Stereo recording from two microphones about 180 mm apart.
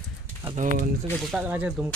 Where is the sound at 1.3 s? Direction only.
10° right (ahead or behind).